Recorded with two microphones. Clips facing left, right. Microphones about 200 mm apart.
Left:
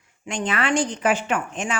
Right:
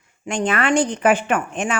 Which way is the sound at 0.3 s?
50° right (ahead or behind).